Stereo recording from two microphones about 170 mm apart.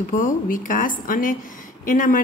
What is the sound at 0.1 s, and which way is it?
A woman's voice, 50° left (ahead or behind).